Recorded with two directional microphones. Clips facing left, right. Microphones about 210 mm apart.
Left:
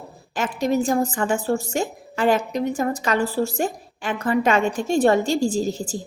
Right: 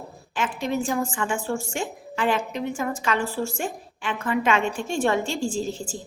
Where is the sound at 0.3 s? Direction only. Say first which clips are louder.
Left 5 dB; 40° left (ahead or behind).